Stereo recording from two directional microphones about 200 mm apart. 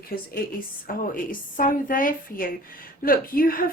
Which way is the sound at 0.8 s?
45° left (ahead or behind).